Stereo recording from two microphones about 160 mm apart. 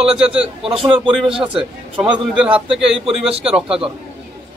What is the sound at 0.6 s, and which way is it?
Speech, 35° right (ahead or behind).